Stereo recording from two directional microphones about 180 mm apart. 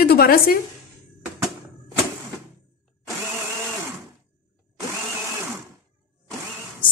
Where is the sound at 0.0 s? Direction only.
55° left (ahead or behind).